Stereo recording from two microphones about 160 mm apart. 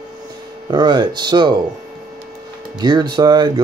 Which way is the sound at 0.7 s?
30° right (ahead or behind).